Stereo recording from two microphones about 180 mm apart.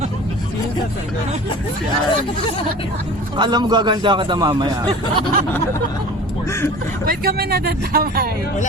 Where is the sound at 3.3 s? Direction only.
25° right (ahead or behind).